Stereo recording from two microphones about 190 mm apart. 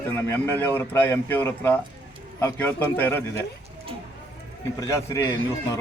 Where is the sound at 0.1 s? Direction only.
10° left (ahead or behind).